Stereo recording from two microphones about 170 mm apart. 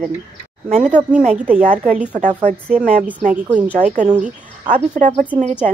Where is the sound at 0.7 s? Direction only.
45° right (ahead or behind).